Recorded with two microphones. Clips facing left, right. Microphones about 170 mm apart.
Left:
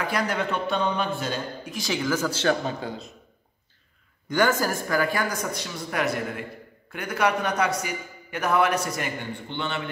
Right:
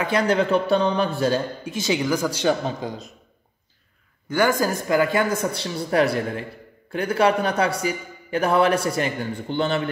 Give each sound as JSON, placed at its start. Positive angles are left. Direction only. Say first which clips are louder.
{"t": 0.0, "sound": "a man's voice", "louder": "right 6 dB", "side_deg": -25}
{"t": 1.8, "sound": "speech", "louder": "right 4 dB", "side_deg": -20}
{"t": 4.3, "sound": "a man's voice", "louder": "right 2 dB", "side_deg": -10}